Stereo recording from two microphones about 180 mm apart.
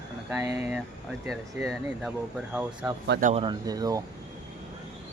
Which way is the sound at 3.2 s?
45° right (ahead or behind).